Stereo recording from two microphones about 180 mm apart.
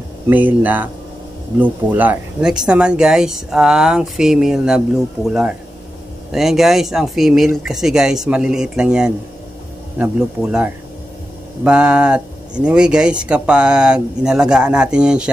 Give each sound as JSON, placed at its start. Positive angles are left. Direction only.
{"t": 0.3, "sound": "speech", "side_deg": -10}